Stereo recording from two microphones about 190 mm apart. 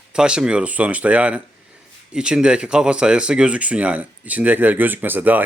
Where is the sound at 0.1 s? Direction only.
5° right (ahead or behind).